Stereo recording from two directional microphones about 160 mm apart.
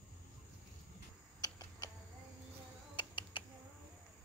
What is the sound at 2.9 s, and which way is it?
Typing, 30° left (ahead or behind).